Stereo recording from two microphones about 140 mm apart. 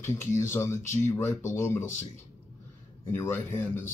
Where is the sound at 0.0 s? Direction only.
20° left (ahead or behind).